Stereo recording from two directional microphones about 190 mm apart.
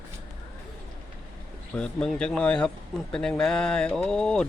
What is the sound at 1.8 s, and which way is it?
Speech, 5° left (ahead or behind).